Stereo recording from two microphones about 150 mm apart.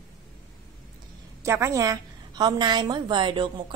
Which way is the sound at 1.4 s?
20° right (ahead or behind).